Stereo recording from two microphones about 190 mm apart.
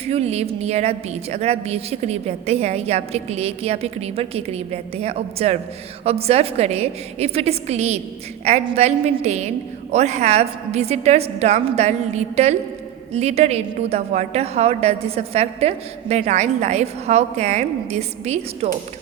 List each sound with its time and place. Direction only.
0.0 s a woman's voice: 35° right (ahead or behind)